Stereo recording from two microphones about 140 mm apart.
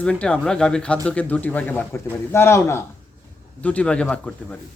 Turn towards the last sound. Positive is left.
turn(degrees=5)  # may be behind; listen again after turning